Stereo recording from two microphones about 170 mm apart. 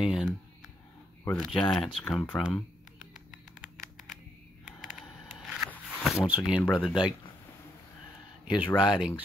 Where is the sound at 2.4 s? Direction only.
5° right (ahead or behind).